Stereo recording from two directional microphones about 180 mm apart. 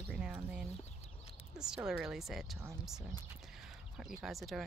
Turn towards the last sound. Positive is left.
turn(degrees=0)  # may be behind; listen again after turning